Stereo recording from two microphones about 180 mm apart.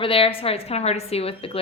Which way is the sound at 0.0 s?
30° left (ahead or behind).